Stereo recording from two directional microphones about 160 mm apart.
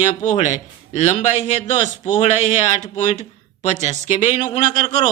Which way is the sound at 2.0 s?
35° left (ahead or behind).